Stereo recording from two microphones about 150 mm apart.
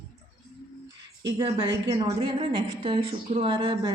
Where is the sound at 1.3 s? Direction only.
25° right (ahead or behind).